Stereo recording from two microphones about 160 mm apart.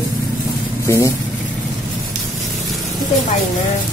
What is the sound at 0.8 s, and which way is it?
Speech, 20° left (ahead or behind).